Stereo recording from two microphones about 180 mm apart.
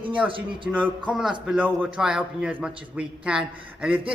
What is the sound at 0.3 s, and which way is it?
Speech, 30° right (ahead or behind).